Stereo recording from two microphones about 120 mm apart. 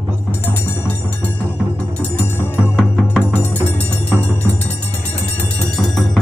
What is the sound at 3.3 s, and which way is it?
Music, 15° left (ahead or behind).